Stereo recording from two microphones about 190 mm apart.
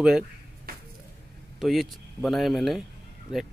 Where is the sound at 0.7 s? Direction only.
50° right (ahead or behind).